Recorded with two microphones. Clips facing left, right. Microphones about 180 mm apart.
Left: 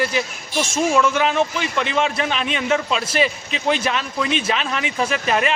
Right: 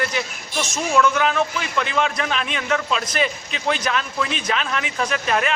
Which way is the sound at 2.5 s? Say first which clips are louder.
Left 3 dB; 25° left (ahead or behind).